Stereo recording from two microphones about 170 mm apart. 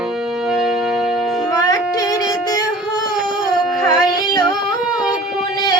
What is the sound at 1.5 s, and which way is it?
Music, 20° left (ahead or behind).